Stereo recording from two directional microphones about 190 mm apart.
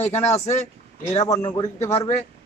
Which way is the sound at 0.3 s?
35° left (ahead or behind).